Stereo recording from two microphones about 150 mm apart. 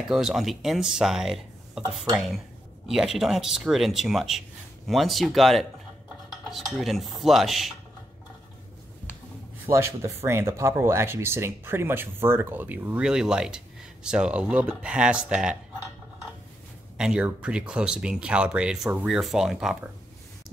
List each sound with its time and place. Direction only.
0.0 s speech: 5° right (ahead or behind)
9.7 s speech: 20° right (ahead or behind)
16.9 s speech: 5° right (ahead or behind)